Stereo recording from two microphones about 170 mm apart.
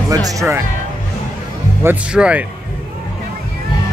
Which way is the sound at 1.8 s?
10° right (ahead or behind).